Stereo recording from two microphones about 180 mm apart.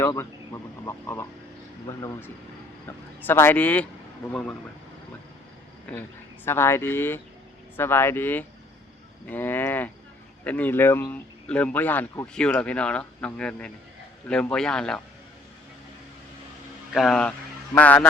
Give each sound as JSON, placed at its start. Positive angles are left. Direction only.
{"t": 0.0, "sound": "speech", "side_deg": 15}
{"t": 5.9, "sound": "a man's voice", "side_deg": 10}
{"t": 16.9, "sound": "a man's voice", "side_deg": 0}